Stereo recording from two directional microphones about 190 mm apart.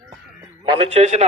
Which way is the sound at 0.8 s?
35° right (ahead or behind).